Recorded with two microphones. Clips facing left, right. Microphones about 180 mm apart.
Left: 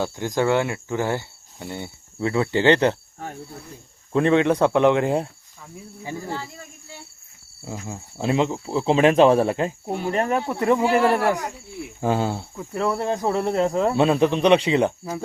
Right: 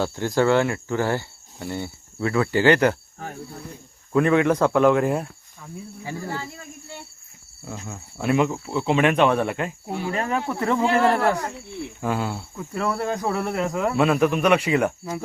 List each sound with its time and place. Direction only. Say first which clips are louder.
0.0 s speech: right 2 dB; 15° left (ahead or behind)
4.1 s speech: even; 25° left (ahead or behind)
7.7 s speech: left 2 dB; 30° left (ahead or behind)
11.9 s speech: left 4 dB; 30° left (ahead or behind)
12.5 s speech: left 1 dB; 15° left (ahead or behind)